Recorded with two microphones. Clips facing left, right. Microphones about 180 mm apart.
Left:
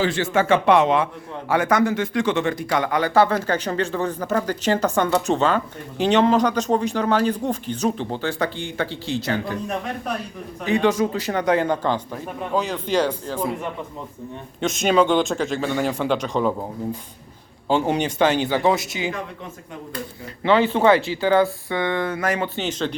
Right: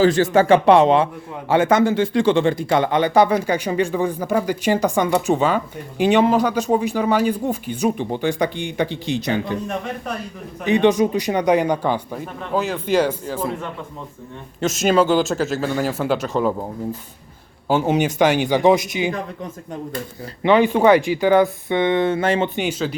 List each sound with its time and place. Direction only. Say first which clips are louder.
0.0 s a man's voice: right 6 dB; 40° right (ahead or behind); by 9.6 s 20° right (ahead or behind)
10.7 s speech: right 4 dB; 20° right (ahead or behind)
14.6 s speech: right 1 dB; centre (ahead or behind)
17.7 s speech: right 2 dB; 5° right (ahead or behind)
20.4 s speech: right 3 dB; 15° right (ahead or behind)
22.5 s speech: right 2 dB; 10° right (ahead or behind)